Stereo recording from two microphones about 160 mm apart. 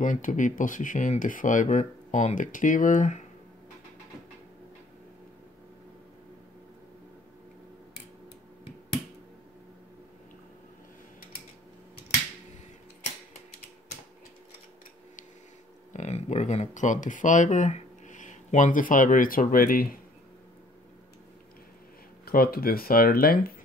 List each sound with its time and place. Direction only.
0.0 s speech: 55° left (ahead or behind)
15.9 s speech: 45° left (ahead or behind); by 19.9 s 60° left (ahead or behind)
22.2 s speech: 70° left (ahead or behind)